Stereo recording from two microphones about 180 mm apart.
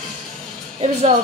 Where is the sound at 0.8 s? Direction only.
40° right (ahead or behind).